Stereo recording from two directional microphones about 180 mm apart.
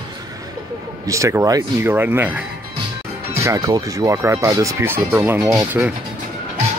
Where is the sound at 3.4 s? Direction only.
20° right (ahead or behind).